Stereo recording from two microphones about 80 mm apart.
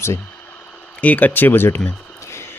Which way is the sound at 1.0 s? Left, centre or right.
Centre.